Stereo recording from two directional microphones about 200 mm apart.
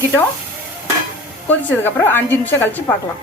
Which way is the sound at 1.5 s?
10° left (ahead or behind).